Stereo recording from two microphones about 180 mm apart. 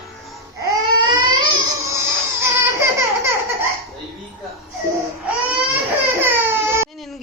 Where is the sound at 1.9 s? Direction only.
15° right (ahead or behind).